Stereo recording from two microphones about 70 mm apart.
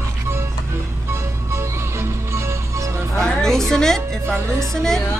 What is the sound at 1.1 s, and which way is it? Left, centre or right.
Music, right.